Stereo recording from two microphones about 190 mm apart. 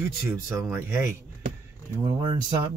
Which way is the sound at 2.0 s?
20° right (ahead or behind).